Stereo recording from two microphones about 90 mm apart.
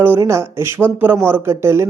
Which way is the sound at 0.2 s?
30° right (ahead or behind).